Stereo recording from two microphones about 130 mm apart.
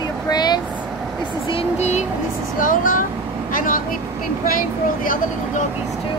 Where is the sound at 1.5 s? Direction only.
50° left (ahead or behind).